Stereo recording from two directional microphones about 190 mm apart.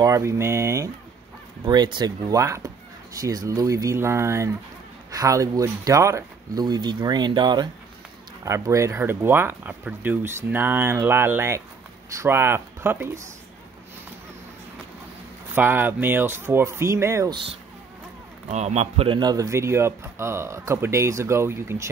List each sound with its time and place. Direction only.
0.0 s a man's voice: 15° right (ahead or behind)
15.5 s a man's voice: 10° right (ahead or behind)
18.5 s a man's voice: 35° right (ahead or behind); by 21.8 s 10° right (ahead or behind)